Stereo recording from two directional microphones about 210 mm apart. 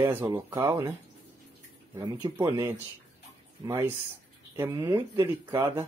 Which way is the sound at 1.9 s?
20° right (ahead or behind).